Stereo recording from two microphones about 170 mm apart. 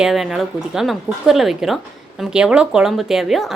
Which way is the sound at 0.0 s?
Centre (ahead or behind).